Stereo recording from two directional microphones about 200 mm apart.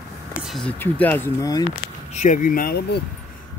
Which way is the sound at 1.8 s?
40° left (ahead or behind).